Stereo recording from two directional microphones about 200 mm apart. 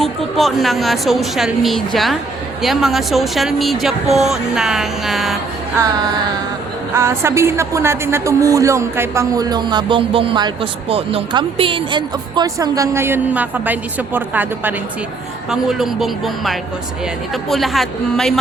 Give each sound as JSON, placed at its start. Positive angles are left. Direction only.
{"t": 0.0, "sound": "speech", "side_deg": 0}
{"t": 6.9, "sound": "speech", "side_deg": -15}